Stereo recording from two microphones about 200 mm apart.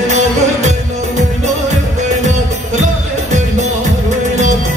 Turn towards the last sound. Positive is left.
turn(degrees=-35)  # may be behind; listen again after turning